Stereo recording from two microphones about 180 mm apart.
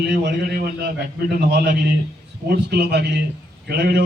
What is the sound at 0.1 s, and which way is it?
Speech, 65° right (ahead or behind).